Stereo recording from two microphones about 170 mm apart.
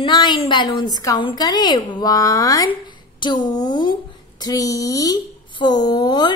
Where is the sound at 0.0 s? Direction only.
25° left (ahead or behind).